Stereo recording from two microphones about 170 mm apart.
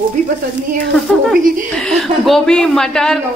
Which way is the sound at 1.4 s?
55° right (ahead or behind).